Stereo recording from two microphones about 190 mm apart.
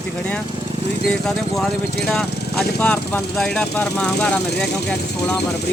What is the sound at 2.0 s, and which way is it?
Speech, 5° left (ahead or behind).